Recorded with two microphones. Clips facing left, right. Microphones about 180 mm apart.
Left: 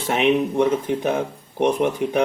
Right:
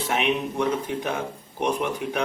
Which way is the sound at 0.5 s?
55° left (ahead or behind).